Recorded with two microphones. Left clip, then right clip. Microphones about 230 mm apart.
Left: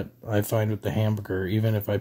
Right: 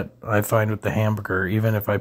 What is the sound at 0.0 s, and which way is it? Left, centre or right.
Speech, centre.